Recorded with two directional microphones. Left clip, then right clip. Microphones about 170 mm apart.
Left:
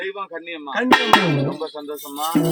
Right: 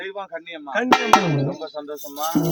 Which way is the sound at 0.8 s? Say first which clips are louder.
Left 2 dB; 40° left (ahead or behind).